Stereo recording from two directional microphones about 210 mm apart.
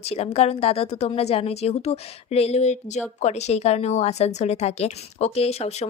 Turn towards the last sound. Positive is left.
turn(degrees=30)  # may be behind; listen again after turning